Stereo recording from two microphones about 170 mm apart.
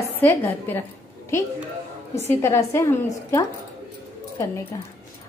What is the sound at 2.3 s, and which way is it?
Speech, 15° left (ahead or behind).